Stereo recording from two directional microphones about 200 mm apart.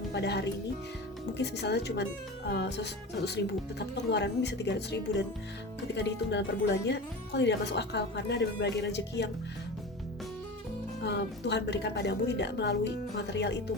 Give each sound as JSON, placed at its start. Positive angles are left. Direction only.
{"t": 0.1, "sound": "speech", "side_deg": 55}
{"t": 11.0, "sound": "speech", "side_deg": 60}